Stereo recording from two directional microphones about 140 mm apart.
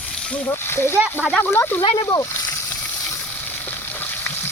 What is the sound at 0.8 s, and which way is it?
Speech, 15° right (ahead or behind).